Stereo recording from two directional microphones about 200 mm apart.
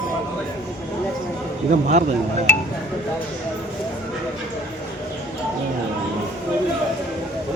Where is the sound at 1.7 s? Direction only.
35° right (ahead or behind).